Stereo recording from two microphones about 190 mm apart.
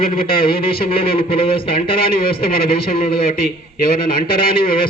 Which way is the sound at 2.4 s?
50° left (ahead or behind).